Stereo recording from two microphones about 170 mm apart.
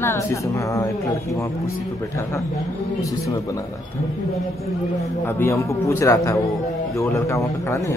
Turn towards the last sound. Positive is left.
turn(degrees=15)  # may be behind; listen again after turning